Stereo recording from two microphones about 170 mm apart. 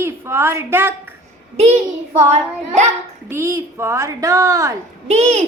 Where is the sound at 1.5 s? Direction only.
40° right (ahead or behind).